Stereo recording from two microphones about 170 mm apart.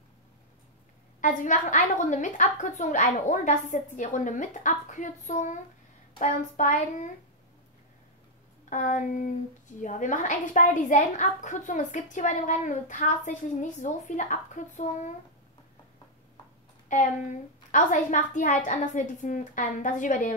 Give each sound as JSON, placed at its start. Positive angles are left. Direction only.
{"t": 1.2, "sound": "a woman's voice", "side_deg": 50}
{"t": 8.6, "sound": "a woman's voice", "side_deg": 50}
{"t": 16.9, "sound": "a woman's voice", "side_deg": 45}